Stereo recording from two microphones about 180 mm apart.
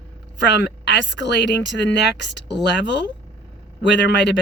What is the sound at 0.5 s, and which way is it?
Speech, 75° left (ahead or behind).